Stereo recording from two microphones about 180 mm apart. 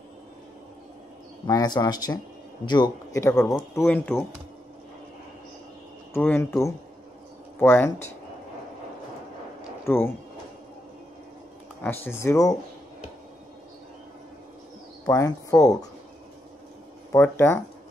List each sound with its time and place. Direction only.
1.5 s a man's voice: 20° left (ahead or behind)
3.8 s speech: 5° left (ahead or behind)
6.1 s speech: 10° left (ahead or behind)
9.8 s speech: 15° left (ahead or behind)
11.8 s speech: 10° left (ahead or behind)
15.0 s a man's voice: 20° left (ahead or behind)
17.1 s speech: 15° left (ahead or behind)